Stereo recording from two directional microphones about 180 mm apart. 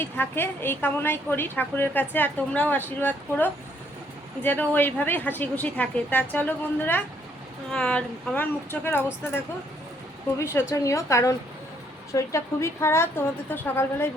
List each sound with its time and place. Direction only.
0.0 s a woman's voice: 10° left (ahead or behind)
10.3 s a woman's voice: 15° left (ahead or behind)